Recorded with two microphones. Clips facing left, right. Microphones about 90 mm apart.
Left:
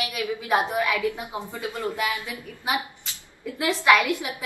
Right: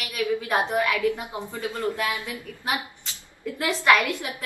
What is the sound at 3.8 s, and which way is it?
Speech, 15° left (ahead or behind).